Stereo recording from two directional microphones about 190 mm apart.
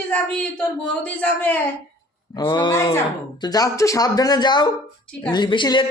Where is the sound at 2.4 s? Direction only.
25° left (ahead or behind).